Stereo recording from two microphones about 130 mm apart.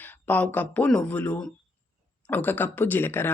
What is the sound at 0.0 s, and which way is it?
Speech, 10° left (ahead or behind).